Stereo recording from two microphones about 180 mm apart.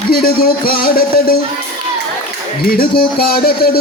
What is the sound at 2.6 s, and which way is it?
A man's voice, 55° left (ahead or behind).